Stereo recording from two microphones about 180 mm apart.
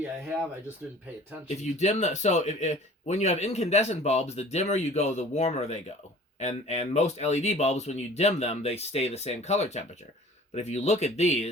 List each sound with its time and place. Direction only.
1.5 s speech: 40° left (ahead or behind)